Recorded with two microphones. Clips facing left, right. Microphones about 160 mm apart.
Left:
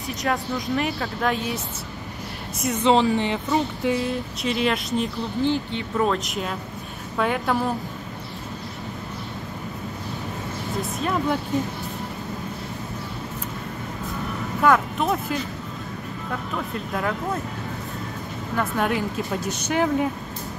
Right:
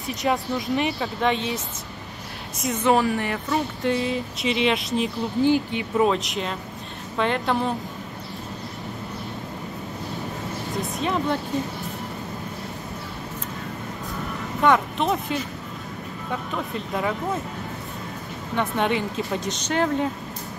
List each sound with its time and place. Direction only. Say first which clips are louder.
0.2 s speech: right 2 dB; centre (ahead or behind)
2.7 s speech: left 2 dB; 20° left (ahead or behind)
3.8 s speech: even; centre (ahead or behind)
6.1 s speech: even; centre (ahead or behind)
11.0 s speech: even; centre (ahead or behind)
14.6 s speech: even; centre (ahead or behind)
18.5 s speech: right 1 dB; 5° left (ahead or behind)